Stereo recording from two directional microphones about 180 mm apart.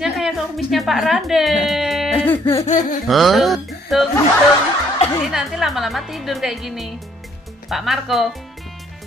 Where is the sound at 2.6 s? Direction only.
45° left (ahead or behind).